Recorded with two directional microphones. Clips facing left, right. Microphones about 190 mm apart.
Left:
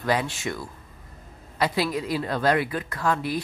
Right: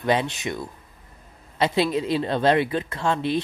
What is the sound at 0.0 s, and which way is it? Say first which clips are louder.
Speech: right 2 dB; 20° right (ahead or behind).